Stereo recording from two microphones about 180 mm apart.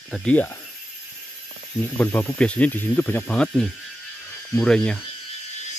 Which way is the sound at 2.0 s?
10° left (ahead or behind).